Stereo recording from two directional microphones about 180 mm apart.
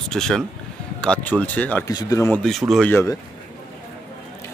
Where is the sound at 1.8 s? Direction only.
20° left (ahead or behind).